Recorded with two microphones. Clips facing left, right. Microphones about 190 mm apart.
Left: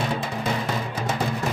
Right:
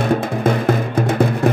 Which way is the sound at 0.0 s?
50° right (ahead or behind).